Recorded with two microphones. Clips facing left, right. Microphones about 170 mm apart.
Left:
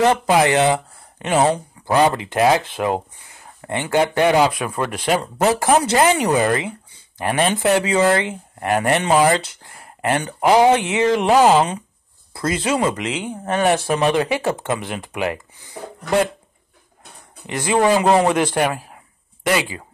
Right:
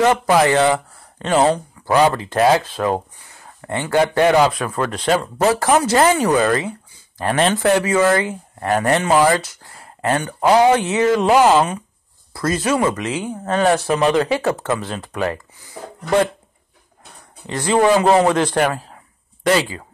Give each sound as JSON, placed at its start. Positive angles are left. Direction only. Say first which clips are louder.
{"t": 0.0, "sound": "speech", "louder": "right 1 dB", "side_deg": 20}
{"t": 12.3, "sound": "speech", "louder": "right 2 dB", "side_deg": 25}
{"t": 17.5, "sound": "speech", "louder": "right 2 dB", "side_deg": 20}